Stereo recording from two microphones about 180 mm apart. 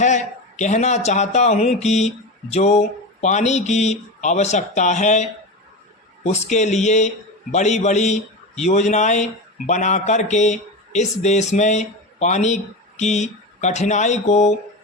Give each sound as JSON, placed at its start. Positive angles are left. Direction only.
{"t": 0.0, "sound": "a man's voice", "side_deg": 40}